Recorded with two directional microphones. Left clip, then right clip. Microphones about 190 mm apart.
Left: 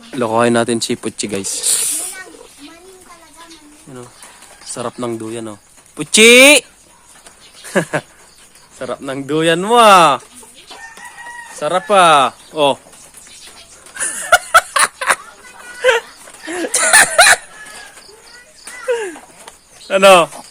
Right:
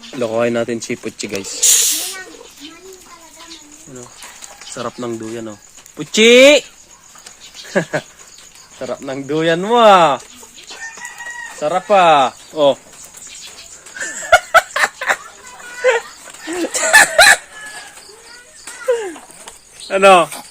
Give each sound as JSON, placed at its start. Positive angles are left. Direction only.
{"t": 0.2, "sound": "speech", "side_deg": 35}
{"t": 4.7, "sound": "speech", "side_deg": 20}
{"t": 7.7, "sound": "speech", "side_deg": 20}
{"t": 11.6, "sound": "speech", "side_deg": 20}
{"t": 13.9, "sound": "snicker", "side_deg": 15}
{"t": 15.8, "sound": "dog", "side_deg": 20}
{"t": 16.6, "sound": "a sound", "side_deg": 20}
{"t": 18.9, "sound": "a sound", "side_deg": 20}
{"t": 19.9, "sound": "speech", "side_deg": 30}